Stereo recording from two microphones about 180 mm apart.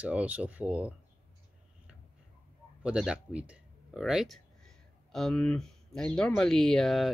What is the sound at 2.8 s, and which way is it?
Speech, 5° right (ahead or behind).